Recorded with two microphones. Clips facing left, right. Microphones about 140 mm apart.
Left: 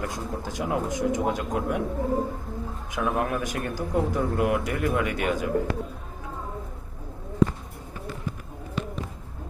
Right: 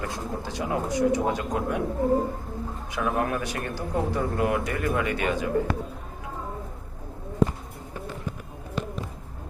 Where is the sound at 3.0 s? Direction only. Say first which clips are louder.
Even; 5° left (ahead or behind).